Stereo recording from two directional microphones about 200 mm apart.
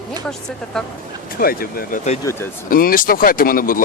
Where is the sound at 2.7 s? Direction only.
45° left (ahead or behind).